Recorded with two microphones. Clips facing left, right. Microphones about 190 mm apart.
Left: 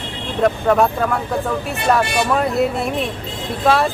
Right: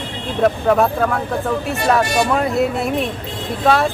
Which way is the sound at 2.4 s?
Centre (ahead or behind).